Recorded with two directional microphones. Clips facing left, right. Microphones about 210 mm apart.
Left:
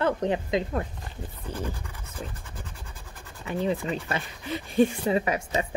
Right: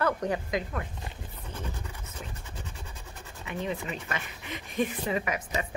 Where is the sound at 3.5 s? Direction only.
35° left (ahead or behind).